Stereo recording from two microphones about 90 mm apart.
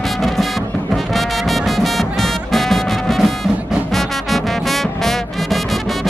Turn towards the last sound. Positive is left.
turn(degrees=0)  # may be behind; listen again after turning